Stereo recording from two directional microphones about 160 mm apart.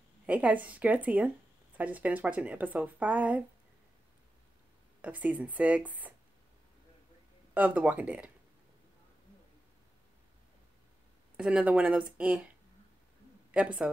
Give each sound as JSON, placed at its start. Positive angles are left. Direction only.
{"t": 0.3, "sound": "speech", "side_deg": -10}
{"t": 5.0, "sound": "speech", "side_deg": -10}
{"t": 7.5, "sound": "speech", "side_deg": -10}
{"t": 11.3, "sound": "speech", "side_deg": -5}